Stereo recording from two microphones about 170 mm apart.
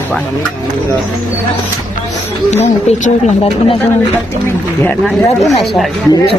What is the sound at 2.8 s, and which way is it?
Speech, 40° left (ahead or behind).